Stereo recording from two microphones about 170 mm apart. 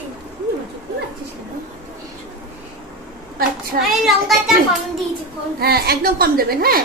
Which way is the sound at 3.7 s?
55° right (ahead or behind).